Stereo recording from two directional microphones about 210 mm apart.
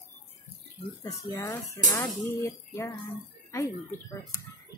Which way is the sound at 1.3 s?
15° left (ahead or behind).